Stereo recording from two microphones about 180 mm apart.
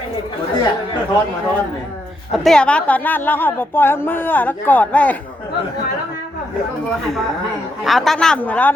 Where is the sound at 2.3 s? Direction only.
5° left (ahead or behind).